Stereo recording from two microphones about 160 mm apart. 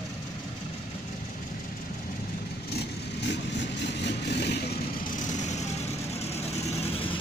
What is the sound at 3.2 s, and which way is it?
Vehicle, 90° left.